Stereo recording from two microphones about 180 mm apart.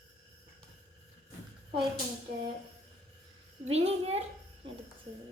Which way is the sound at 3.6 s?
35° right (ahead or behind).